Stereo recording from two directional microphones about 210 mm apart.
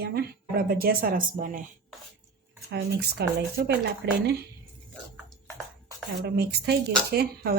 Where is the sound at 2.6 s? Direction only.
55° right (ahead or behind).